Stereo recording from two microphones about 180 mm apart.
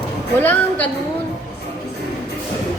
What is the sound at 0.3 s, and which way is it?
Speech, 10° left (ahead or behind).